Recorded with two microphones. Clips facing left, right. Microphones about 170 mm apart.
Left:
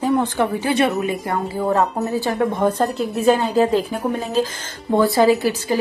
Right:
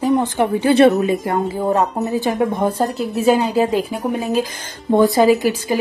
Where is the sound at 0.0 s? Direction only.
20° right (ahead or behind).